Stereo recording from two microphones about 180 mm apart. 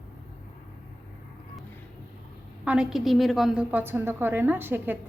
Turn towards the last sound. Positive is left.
turn(degrees=-10)  # may be behind; listen again after turning